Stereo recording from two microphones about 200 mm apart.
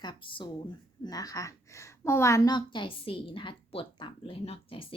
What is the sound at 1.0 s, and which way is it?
A woman's voice, 20° left (ahead or behind).